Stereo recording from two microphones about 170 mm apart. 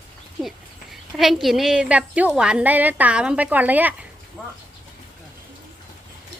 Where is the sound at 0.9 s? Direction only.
Centre (ahead or behind).